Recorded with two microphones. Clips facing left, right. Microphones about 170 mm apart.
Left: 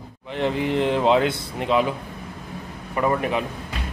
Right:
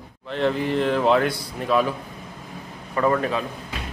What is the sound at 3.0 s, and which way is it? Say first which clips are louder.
Speech: right 1 dB; 15° left (ahead or behind).